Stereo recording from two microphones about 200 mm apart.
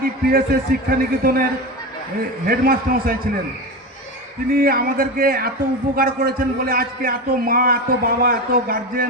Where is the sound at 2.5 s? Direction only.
45° right (ahead or behind).